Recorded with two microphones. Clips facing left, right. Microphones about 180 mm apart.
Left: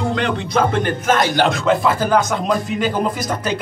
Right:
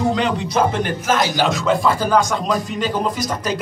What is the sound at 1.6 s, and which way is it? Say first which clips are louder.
Speech: left 1 dB; 5° left (ahead or behind).